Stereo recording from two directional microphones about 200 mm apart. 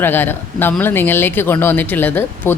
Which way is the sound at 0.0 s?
10° left (ahead or behind).